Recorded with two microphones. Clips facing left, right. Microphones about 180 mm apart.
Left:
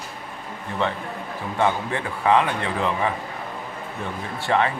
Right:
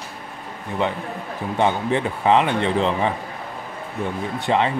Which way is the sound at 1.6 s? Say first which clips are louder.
Right 3 dB; 20° right (ahead or behind).